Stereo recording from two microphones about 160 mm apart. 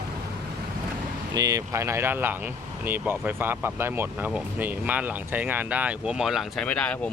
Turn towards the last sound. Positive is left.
turn(degrees=5)  # may be behind; listen again after turning